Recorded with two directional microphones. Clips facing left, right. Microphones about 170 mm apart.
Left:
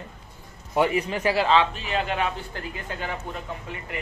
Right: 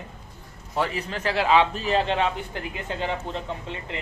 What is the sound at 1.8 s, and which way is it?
Speech, 30° right (ahead or behind).